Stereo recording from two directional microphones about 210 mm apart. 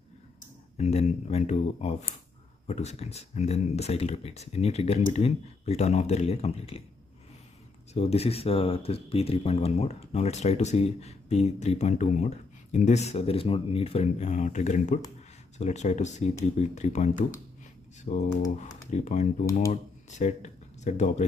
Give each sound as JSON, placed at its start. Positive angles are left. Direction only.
{"t": 0.7, "sound": "speech", "side_deg": 30}
{"t": 7.9, "sound": "speech", "side_deg": 30}